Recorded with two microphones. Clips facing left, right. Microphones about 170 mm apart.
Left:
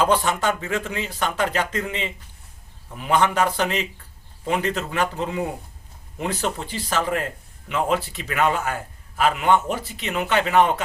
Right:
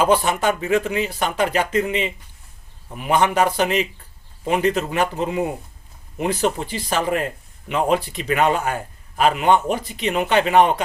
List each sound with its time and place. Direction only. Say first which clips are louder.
0.0 s a man's voice: right 3 dB; 10° right (ahead or behind)